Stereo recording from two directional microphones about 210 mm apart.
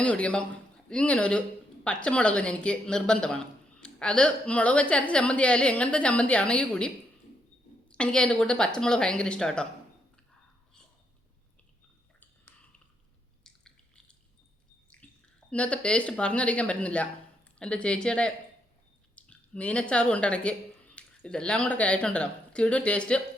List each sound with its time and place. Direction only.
0.0 s a woman's voice: 5° left (ahead or behind)
13.4 s drip: 5° left (ahead or behind)
14.8 s a woman's voice: 5° left (ahead or behind)